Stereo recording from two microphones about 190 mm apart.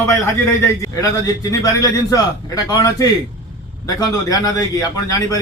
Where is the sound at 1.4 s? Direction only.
15° left (ahead or behind).